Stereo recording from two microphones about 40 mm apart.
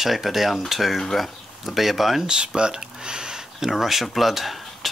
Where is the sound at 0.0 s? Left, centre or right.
Centre.